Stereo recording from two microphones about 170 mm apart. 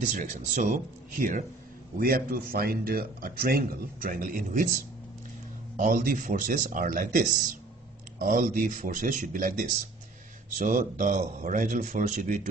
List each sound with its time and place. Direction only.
0.1 s speech: 50° right (ahead or behind)
5.8 s speech: 50° right (ahead or behind)
10.6 s speech: 50° right (ahead or behind)